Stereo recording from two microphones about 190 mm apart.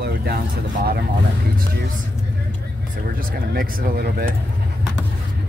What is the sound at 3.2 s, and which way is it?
Speech, 50° right (ahead or behind).